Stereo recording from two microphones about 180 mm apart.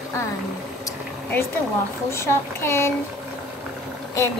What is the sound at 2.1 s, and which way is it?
Speech, 15° left (ahead or behind).